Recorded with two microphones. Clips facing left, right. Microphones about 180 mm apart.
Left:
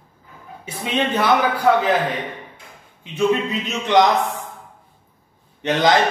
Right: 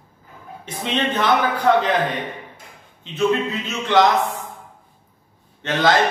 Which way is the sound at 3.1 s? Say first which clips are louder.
Left 1 dB; 15° left (ahead or behind).